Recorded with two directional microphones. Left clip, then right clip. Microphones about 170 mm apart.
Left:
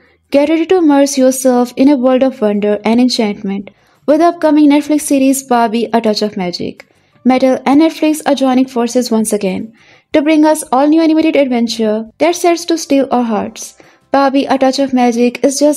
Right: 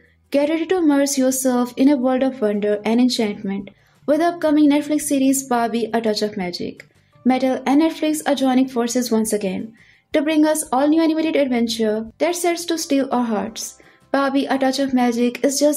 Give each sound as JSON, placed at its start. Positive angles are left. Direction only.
{"t": 0.3, "sound": "speech", "side_deg": 40}